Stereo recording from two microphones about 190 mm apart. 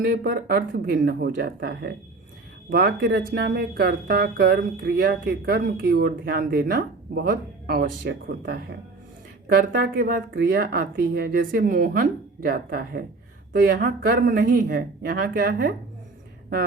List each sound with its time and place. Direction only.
0.0 s a woman's voice: 50° right (ahead or behind)